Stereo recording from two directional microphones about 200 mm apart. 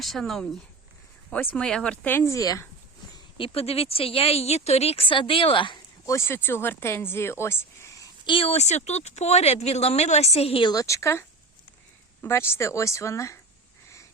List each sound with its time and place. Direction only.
0.0 s speech: centre (ahead or behind); by 2.6 s 15° left (ahead or behind)
3.3 s speech: 25° left (ahead or behind)